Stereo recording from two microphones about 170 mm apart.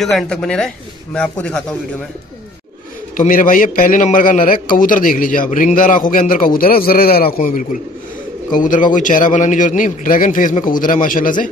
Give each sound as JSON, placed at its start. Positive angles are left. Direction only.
{"t": 0.0, "sound": "speech", "side_deg": 0}
{"t": 3.2, "sound": "a man's voice", "side_deg": 55}